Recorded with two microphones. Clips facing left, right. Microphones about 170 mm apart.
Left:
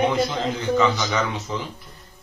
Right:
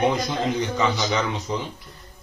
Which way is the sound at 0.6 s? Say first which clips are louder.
Left 3 dB; 15° right (ahead or behind).